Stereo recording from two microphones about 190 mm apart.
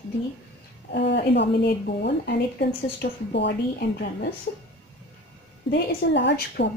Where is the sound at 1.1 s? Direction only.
65° left (ahead or behind).